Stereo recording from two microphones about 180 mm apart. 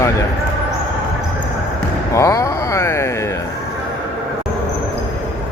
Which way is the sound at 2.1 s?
15° left (ahead or behind).